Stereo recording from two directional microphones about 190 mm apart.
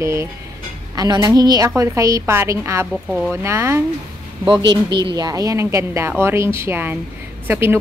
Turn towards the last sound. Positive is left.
turn(degrees=-10)  # may be behind; listen again after turning